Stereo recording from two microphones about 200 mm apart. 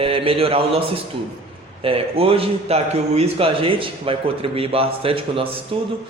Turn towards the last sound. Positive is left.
turn(degrees=-30)  # may be behind; listen again after turning